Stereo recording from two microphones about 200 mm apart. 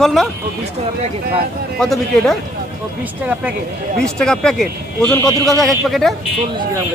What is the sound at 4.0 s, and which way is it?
Speech, 5° left (ahead or behind).